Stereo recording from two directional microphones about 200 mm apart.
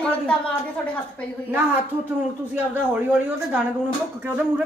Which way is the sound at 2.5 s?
10° right (ahead or behind).